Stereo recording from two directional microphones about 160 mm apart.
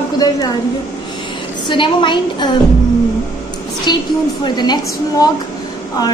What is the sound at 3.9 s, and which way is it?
A woman's voice, 25° left (ahead or behind).